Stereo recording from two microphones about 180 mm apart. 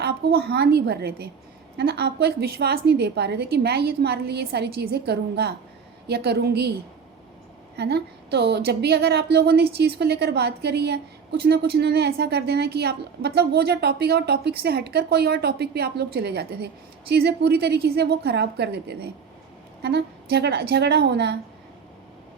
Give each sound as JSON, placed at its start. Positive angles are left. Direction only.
{"t": 0.0, "sound": "a woman's voice", "side_deg": -60}
{"t": 7.8, "sound": "a woman's voice", "side_deg": -65}